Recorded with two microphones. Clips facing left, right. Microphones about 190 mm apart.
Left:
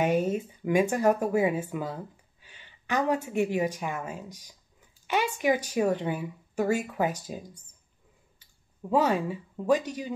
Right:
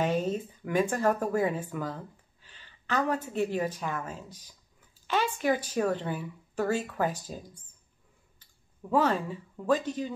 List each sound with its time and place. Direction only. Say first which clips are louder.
0.0 s a sound: left 3 dB; 10° left (ahead or behind)
3.3 s a woman's voice: left 3 dB; 15° left (ahead or behind)
8.9 s a woman's voice: left 1 dB; 10° left (ahead or behind)